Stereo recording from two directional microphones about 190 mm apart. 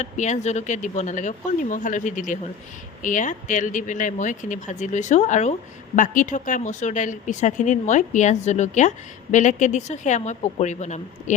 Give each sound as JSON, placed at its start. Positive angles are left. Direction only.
{"t": 0.0, "sound": "speech", "side_deg": 40}